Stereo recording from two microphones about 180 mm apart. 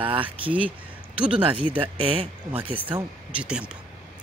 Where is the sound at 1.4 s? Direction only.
30° right (ahead or behind).